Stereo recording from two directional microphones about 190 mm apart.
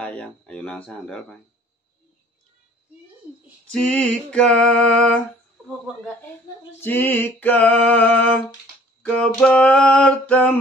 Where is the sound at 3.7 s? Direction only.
5° left (ahead or behind).